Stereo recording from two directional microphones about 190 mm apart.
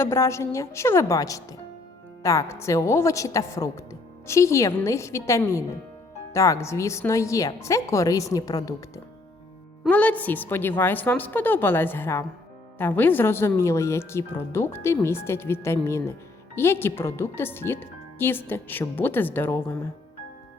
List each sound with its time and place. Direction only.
0.0 s speech: 15° left (ahead or behind)
9.8 s speech: 5° left (ahead or behind)